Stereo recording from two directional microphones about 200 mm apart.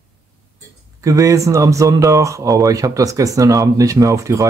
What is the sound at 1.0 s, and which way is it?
Speech, 15° right (ahead or behind).